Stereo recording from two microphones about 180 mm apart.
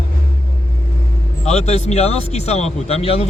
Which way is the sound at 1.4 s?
35° left (ahead or behind).